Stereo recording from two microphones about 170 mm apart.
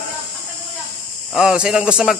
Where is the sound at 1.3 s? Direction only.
5° right (ahead or behind).